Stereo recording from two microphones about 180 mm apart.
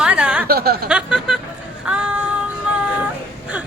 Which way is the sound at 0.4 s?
60° right (ahead or behind).